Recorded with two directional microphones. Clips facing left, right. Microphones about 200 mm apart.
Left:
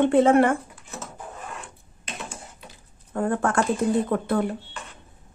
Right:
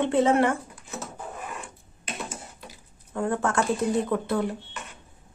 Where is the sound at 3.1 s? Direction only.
55° left (ahead or behind).